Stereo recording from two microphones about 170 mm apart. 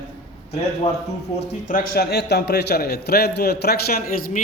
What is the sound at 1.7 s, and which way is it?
A man's voice, 60° left (ahead or behind).